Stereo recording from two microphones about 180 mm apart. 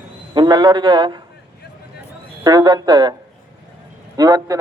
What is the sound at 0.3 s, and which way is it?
Speech, 25° right (ahead or behind).